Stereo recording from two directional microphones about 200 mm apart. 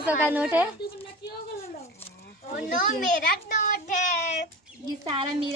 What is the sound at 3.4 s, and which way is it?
Child singing, 40° left (ahead or behind).